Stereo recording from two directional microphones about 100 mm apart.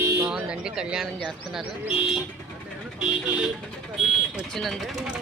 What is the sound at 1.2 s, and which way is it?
Speech, 5° left (ahead or behind).